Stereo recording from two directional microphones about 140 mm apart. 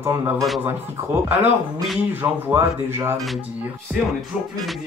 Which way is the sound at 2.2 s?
15° right (ahead or behind).